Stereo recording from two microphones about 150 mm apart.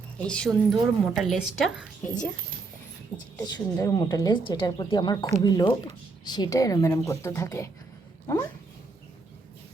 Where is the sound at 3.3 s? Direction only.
25° left (ahead or behind).